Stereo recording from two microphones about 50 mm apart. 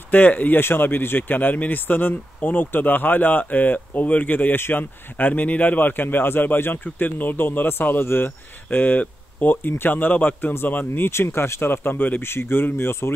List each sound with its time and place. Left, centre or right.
0.1 s speech: left
0.6 s speech: left
4.7 s speech: left
8.6 s speech: left
11.0 s speech: left
11.7 s speech: left